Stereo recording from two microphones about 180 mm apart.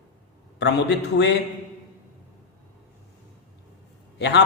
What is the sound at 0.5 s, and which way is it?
Speech, 70° left (ahead or behind).